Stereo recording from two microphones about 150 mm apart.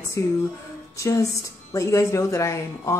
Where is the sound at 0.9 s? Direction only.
20° left (ahead or behind).